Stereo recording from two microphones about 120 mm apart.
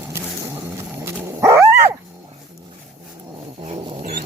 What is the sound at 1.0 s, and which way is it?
Dog, 25° right (ahead or behind).